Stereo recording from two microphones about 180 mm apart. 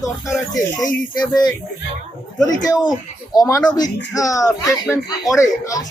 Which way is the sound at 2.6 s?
20° left (ahead or behind).